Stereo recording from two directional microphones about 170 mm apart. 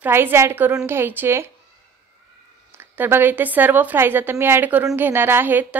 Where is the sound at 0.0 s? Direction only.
15° right (ahead or behind).